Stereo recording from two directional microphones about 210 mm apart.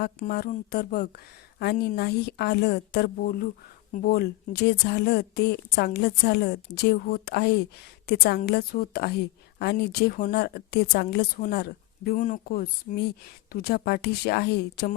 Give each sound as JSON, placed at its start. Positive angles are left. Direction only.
{"t": 0.2, "sound": "speech", "side_deg": 45}